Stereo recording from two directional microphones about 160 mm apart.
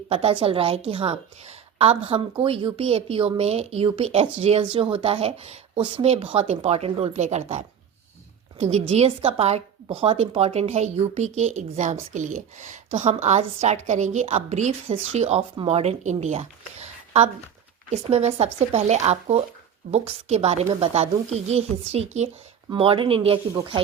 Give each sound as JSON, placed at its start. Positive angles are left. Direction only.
{"t": 0.1, "sound": "a woman's voice", "side_deg": -35}